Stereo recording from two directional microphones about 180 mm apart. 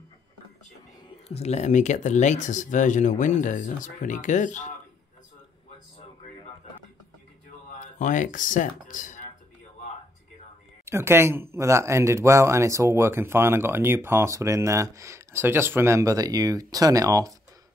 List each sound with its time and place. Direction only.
1.3 s speech: 35° left (ahead or behind)
7.8 s speech: 45° left (ahead or behind)
10.9 s speech: 15° right (ahead or behind)